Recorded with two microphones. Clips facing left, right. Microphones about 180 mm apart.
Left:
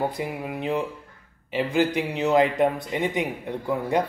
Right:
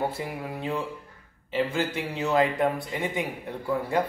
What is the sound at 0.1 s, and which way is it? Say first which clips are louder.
Speech: left 3 dB; 15° left (ahead or behind).